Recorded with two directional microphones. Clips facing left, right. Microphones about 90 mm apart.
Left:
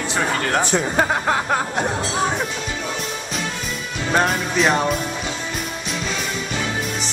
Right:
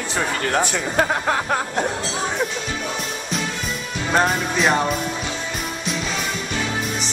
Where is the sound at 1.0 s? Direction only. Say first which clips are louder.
Right 2 dB; 5° left (ahead or behind).